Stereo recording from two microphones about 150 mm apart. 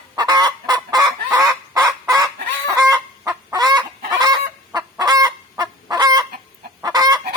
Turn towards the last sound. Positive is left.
turn(degrees=-25)  # may be behind; listen again after turning